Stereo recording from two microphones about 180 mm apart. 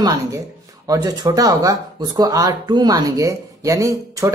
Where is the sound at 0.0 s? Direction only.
20° right (ahead or behind).